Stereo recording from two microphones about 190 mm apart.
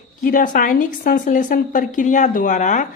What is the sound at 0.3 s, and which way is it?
Speech, 45° left (ahead or behind).